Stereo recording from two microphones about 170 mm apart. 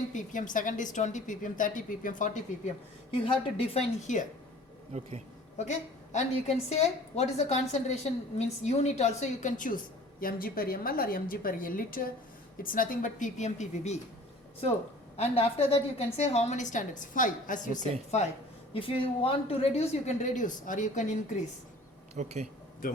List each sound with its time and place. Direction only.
0.1 s a woman's voice: 50° left (ahead or behind)
3.8 s a woman's voice: 45° left (ahead or behind)
4.9 s speech: 40° right (ahead or behind)
5.5 s a woman's voice: 45° left (ahead or behind)
15.1 s a woman's voice: 35° left (ahead or behind)
22.1 s speech: 40° right (ahead or behind)